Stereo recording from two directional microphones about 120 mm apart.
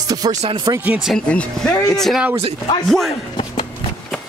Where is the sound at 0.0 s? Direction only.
30° right (ahead or behind).